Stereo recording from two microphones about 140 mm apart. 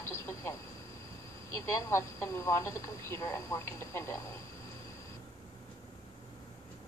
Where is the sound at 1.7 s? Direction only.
20° left (ahead or behind).